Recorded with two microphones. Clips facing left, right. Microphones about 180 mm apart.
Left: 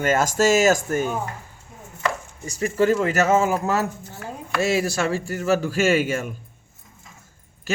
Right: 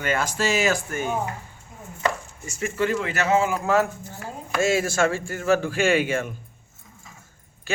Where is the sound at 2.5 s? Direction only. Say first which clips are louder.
Left 5 dB; 35° left (ahead or behind).